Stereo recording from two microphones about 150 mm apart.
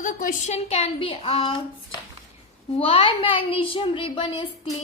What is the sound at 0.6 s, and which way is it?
A child's voice, 45° left (ahead or behind).